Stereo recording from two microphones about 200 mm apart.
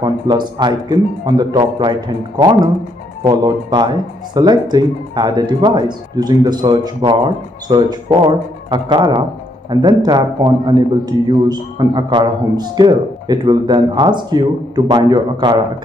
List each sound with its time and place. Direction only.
0.0 s a man's voice: 20° right (ahead or behind)